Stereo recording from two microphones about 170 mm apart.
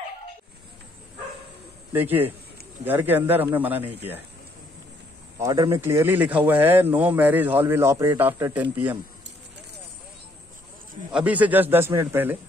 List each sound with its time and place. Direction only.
1.9 s speech: 10° right (ahead or behind)
5.4 s speech: 20° right (ahead or behind)
11.1 s speech: 5° right (ahead or behind)